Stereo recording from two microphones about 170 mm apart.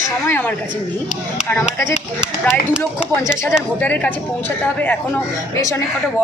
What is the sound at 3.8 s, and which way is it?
Speech, 10° left (ahead or behind).